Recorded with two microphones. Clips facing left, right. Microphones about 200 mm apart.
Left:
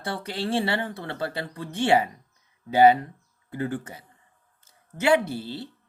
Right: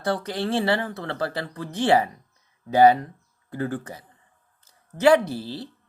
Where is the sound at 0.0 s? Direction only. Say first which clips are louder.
Right 4 dB; 25° left (ahead or behind).